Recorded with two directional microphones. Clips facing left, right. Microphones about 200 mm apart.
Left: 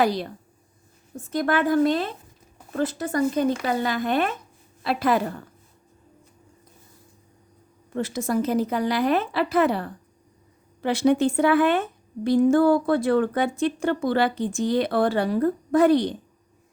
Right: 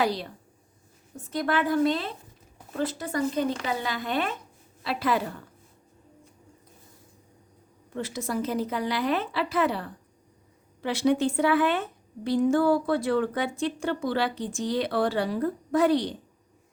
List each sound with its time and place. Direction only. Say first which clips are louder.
1.1 s a woman's voice: left 4 dB; 45° left (ahead or behind)
7.9 s a woman's voice: left 5 dB; 45° left (ahead or behind)